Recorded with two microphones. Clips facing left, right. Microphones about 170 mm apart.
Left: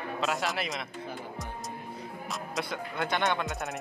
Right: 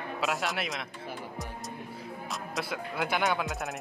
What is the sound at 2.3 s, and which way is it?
Speech, centre (ahead or behind).